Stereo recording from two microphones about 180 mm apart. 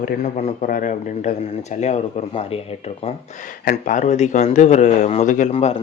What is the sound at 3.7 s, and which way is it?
Speech, 45° left (ahead or behind).